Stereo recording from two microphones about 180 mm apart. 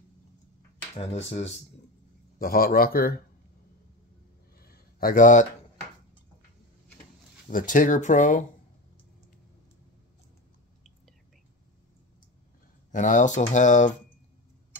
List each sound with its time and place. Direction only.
0.9 s speech: 35° left (ahead or behind)
2.3 s speech: 55° left (ahead or behind)
4.6 s a sound: 55° left (ahead or behind)
7.4 s speech: 45° left (ahead or behind)
12.9 s speech: 45° left (ahead or behind)